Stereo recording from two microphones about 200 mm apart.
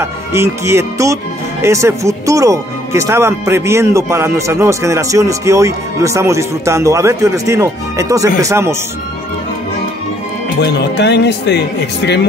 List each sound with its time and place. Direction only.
0.0 s speech: 15° right (ahead or behind)
10.6 s speech: 55° left (ahead or behind)